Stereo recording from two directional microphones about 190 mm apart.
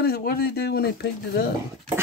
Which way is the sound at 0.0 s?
50° left (ahead or behind).